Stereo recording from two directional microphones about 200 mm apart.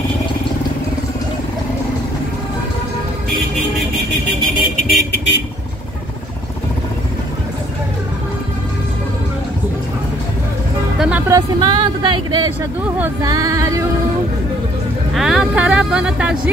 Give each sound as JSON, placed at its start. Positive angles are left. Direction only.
{"t": 4.8, "sound": "vehicle", "side_deg": 55}
{"t": 11.0, "sound": "speech", "side_deg": -5}
{"t": 15.1, "sound": "speech", "side_deg": 0}